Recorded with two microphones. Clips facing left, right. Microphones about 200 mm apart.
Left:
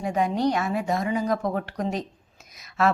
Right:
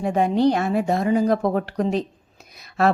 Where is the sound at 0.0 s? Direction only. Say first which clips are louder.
Right 5 dB; 30° right (ahead or behind).